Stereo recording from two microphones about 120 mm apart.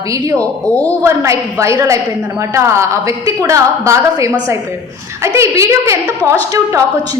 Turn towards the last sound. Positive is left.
turn(degrees=-25)  # may be behind; listen again after turning